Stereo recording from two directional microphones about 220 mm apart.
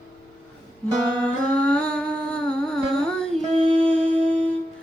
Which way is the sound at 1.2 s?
5° left (ahead or behind).